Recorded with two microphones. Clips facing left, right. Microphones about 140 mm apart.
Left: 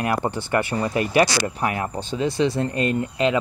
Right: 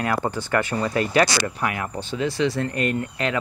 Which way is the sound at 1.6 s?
30° left (ahead or behind).